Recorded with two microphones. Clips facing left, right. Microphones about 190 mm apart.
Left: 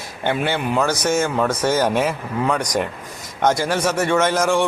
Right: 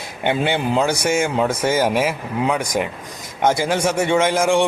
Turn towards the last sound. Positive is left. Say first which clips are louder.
# right 1 dB
turn(degrees=-10)  # may be behind; listen again after turning